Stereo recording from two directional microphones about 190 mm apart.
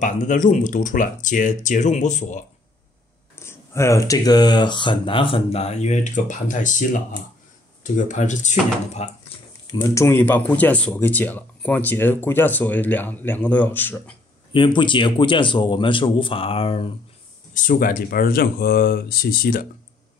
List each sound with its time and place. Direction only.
0.0 s speech: 40° left (ahead or behind)
3.3 s speech: 15° left (ahead or behind); by 9.1 s 35° left (ahead or behind)
9.7 s speech: 15° left (ahead or behind)
14.5 s speech: 25° left (ahead or behind)
17.6 s speech: 45° left (ahead or behind)